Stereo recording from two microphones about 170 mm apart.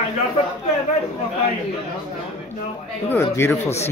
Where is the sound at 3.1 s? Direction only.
15° left (ahead or behind).